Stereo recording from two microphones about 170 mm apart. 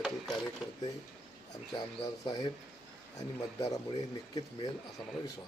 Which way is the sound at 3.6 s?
20° left (ahead or behind).